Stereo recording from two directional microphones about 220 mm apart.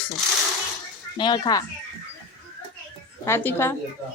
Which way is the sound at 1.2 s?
20° left (ahead or behind).